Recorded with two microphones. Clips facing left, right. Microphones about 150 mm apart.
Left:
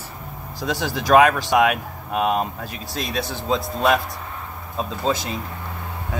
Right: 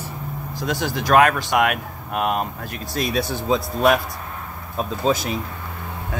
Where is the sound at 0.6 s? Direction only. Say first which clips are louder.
Even; 5° left (ahead or behind).